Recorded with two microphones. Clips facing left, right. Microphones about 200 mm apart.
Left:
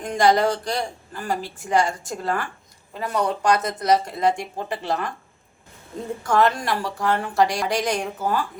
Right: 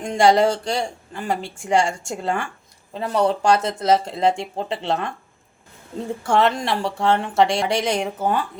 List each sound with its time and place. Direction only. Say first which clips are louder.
0.0 s speech: right 3 dB; 30° right (ahead or behind)
6.2 s speech: right 1 dB; 25° right (ahead or behind)